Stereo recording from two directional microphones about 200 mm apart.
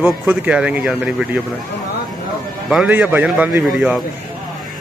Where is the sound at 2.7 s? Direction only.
5° right (ahead or behind).